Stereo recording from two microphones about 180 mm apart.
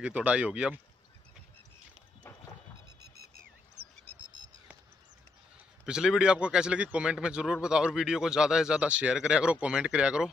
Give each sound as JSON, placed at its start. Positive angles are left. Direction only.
{"t": 0.0, "sound": "speech", "side_deg": -5}
{"t": 4.0, "sound": "bird", "side_deg": -30}
{"t": 5.9, "sound": "a man's voice", "side_deg": -5}